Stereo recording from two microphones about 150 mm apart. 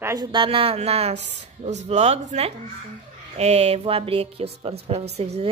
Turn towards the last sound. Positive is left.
turn(degrees=-45)  # may be behind; listen again after turning